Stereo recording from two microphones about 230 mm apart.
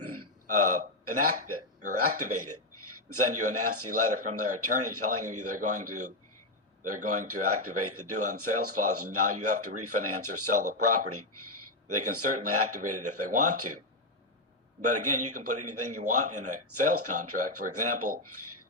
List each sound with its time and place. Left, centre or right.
0.0 s burping: right
1.0 s a man's voice: right
14.8 s speech: right